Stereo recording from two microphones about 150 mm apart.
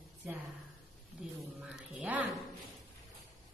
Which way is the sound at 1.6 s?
5° right (ahead or behind).